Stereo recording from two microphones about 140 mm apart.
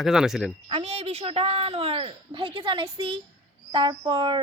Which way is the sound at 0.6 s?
45° right (ahead or behind).